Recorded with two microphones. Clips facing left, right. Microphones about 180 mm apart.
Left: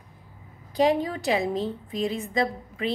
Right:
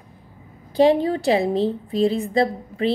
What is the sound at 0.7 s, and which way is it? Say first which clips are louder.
A woman's voice: right 6 dB; 30° right (ahead or behind).